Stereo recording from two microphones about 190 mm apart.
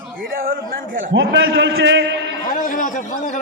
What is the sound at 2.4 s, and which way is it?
Speech, 45° left (ahead or behind).